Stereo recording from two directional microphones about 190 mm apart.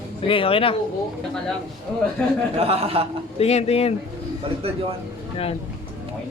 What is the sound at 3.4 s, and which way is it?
Speech, 35° left (ahead or behind).